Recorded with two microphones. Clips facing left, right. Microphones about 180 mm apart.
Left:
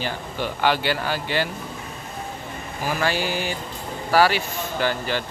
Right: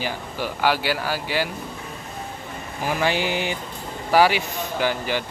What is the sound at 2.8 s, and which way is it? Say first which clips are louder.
Mantra: right 1 dB; 20° right (ahead or behind).